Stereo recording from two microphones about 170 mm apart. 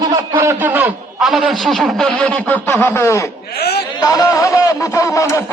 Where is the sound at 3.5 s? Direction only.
70° left (ahead or behind).